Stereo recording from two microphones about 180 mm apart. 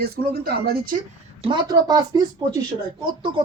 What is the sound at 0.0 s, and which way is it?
Speech, 55° right (ahead or behind).